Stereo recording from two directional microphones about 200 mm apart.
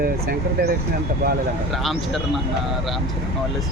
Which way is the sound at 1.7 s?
Centre (ahead or behind).